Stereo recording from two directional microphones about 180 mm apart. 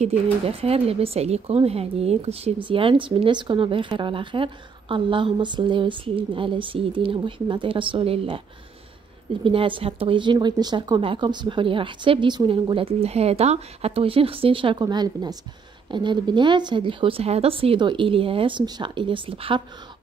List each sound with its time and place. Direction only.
0.0 s speech: 35° right (ahead or behind)
9.4 s speech: 30° right (ahead or behind)